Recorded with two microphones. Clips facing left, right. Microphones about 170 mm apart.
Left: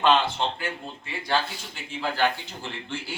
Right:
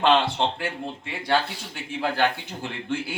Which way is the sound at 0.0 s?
70° right (ahead or behind).